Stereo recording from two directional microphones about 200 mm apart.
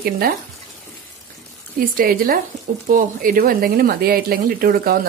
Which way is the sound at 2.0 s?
45° right (ahead or behind).